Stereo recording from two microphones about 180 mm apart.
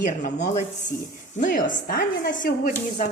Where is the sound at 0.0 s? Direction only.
45° left (ahead or behind).